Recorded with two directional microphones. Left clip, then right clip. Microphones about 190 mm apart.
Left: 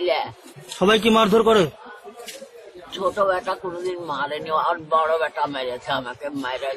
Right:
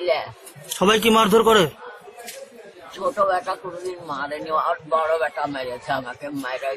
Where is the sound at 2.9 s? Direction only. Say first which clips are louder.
Even; centre (ahead or behind).